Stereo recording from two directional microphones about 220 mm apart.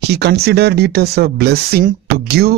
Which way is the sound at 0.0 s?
45° right (ahead or behind).